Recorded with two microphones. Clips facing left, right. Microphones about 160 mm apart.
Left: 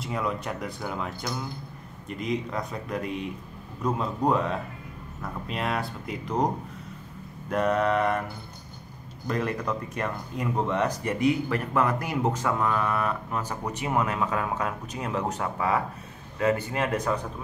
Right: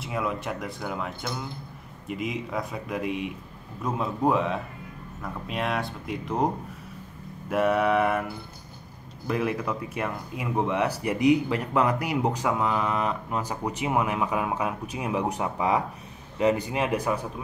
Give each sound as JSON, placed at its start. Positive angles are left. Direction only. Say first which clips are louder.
{"t": 0.0, "sound": "speech", "louder": "even", "side_deg": -5}
{"t": 9.3, "sound": "speech", "louder": "right 1 dB", "side_deg": -5}